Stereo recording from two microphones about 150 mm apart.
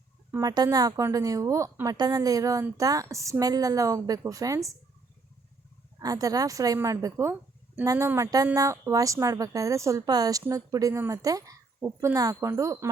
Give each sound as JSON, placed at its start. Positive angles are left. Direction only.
{"t": 0.3, "sound": "speech", "side_deg": -20}
{"t": 6.0, "sound": "speech", "side_deg": -25}